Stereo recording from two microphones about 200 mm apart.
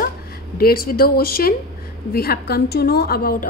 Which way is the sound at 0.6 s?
50° left (ahead or behind).